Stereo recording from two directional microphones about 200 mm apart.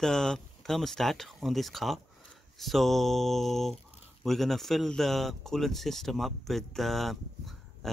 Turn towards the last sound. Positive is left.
turn(degrees=0)  # may be behind; listen again after turning